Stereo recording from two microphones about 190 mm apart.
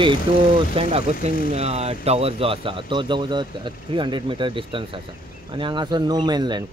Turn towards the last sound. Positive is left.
turn(degrees=-20)  # may be behind; listen again after turning